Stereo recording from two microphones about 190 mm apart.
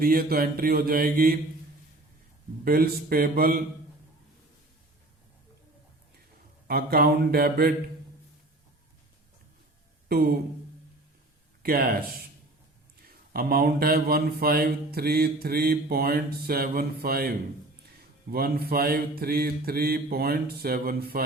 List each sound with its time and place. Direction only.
0.0 s mantra: 50° right (ahead or behind)
2.6 s mantra: 50° right (ahead or behind)
6.7 s speech: 55° right (ahead or behind)
10.1 s speech: 55° right (ahead or behind)
11.6 s mantra: 50° right (ahead or behind)
13.0 s speech: 55° right (ahead or behind)
14.9 s mantra: 55° right (ahead or behind)